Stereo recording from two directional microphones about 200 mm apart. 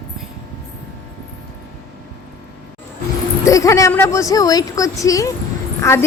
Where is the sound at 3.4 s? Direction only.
15° left (ahead or behind).